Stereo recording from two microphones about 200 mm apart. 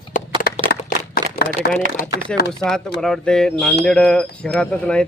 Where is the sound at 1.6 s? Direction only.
50° left (ahead or behind).